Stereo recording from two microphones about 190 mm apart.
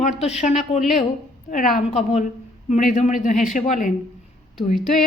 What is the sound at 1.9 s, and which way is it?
A man's voice, 35° left (ahead or behind).